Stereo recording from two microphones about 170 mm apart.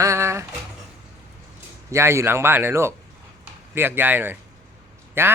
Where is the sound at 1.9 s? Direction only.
15° right (ahead or behind).